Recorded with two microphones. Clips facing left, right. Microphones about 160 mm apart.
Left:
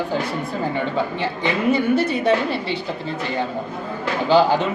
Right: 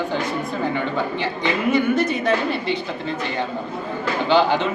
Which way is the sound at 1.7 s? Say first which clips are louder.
Even; 30° left (ahead or behind).